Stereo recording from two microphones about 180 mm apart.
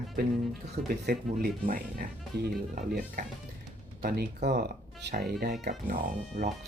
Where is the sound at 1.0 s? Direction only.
55° right (ahead or behind).